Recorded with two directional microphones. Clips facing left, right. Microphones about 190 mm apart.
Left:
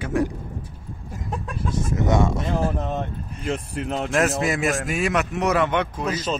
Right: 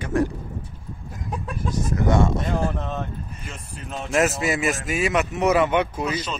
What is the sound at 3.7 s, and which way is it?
Speech, 70° left (ahead or behind).